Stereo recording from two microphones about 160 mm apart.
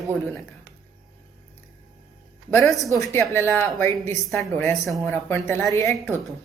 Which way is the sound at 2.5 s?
20° left (ahead or behind).